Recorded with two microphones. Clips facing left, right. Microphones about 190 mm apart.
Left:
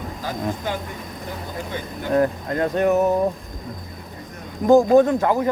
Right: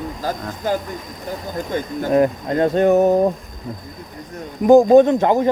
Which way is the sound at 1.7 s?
45° right (ahead or behind).